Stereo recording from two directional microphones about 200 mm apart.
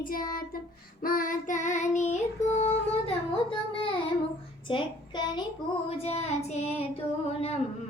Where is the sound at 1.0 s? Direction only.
45° left (ahead or behind).